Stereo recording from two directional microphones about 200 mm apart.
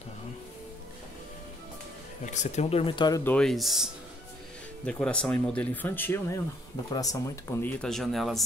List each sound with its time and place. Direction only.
2.2 s speech: 35° left (ahead or behind)
3.3 s speech: 5° left (ahead or behind)